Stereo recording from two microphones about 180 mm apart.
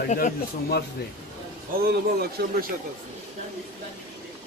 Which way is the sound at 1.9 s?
60° right (ahead or behind).